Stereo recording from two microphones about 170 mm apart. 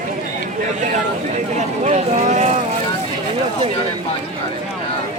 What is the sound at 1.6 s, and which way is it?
Speech, 40° right (ahead or behind).